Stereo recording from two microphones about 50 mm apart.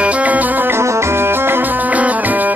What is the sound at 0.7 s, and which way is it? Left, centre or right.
Music, right.